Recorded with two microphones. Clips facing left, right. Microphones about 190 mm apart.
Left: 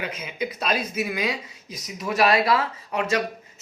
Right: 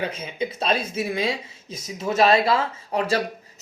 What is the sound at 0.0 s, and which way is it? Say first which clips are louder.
Speech: right 2 dB; 30° right (ahead or behind).